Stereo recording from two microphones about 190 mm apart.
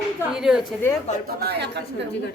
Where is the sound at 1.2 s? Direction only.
55° right (ahead or behind).